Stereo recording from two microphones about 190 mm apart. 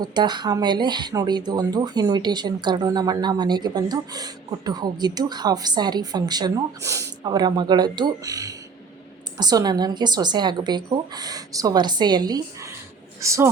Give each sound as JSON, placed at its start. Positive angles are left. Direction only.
{"t": 0.0, "sound": "speech", "side_deg": -20}